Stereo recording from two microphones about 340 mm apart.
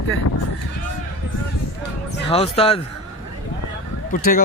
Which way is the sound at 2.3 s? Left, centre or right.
Centre.